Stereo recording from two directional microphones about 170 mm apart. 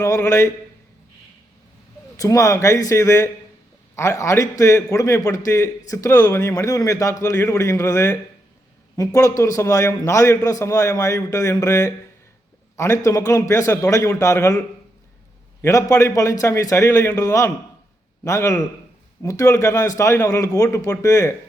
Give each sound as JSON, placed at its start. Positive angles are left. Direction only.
{"t": 0.0, "sound": "a man's voice", "side_deg": 20}
{"t": 2.1, "sound": "a man's voice", "side_deg": 20}
{"t": 15.6, "sound": "a man's voice", "side_deg": 20}